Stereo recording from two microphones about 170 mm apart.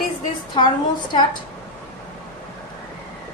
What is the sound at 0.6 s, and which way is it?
Speech, 25° left (ahead or behind).